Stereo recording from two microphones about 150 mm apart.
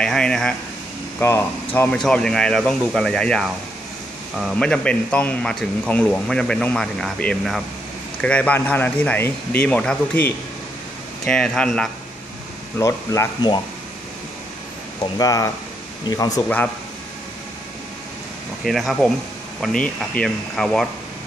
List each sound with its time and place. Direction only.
0.0 s speech: 5° left (ahead or behind)
1.2 s speech: 15° left (ahead or behind)
2.0 s speech: 5° left (ahead or behind)
12.7 s speech: 20° left (ahead or behind)
15.1 s speech: 20° left (ahead or behind)
18.6 s speech: centre (ahead or behind)